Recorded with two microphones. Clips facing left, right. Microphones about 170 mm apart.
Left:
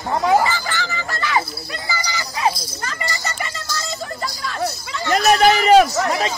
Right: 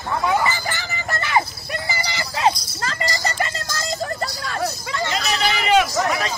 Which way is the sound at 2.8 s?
35° right (ahead or behind).